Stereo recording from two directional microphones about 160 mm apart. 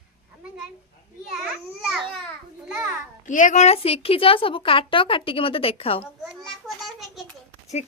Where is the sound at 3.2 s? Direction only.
55° left (ahead or behind); by 6.1 s 35° left (ahead or behind).